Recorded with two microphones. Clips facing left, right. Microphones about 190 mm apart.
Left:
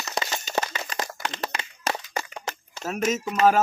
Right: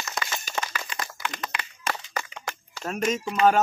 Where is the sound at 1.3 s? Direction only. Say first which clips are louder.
Left 3 dB; 35° left (ahead or behind).